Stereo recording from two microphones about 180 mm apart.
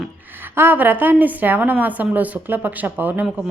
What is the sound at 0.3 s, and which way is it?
A woman's voice, 10° right (ahead or behind).